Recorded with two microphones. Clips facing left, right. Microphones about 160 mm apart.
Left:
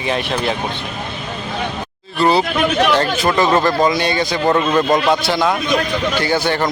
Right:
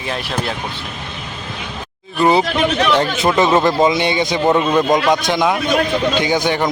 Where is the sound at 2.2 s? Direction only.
15° right (ahead or behind).